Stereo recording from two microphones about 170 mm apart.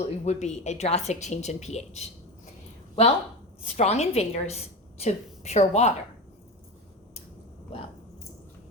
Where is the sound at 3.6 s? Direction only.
40° left (ahead or behind).